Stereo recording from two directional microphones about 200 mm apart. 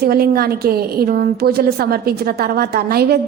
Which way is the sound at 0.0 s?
50° right (ahead or behind).